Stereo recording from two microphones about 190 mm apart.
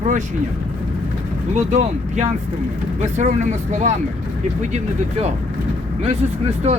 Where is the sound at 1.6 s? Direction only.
40° right (ahead or behind).